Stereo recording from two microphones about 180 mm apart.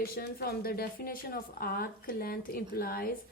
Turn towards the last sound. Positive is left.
turn(degrees=55)  # may be behind; listen again after turning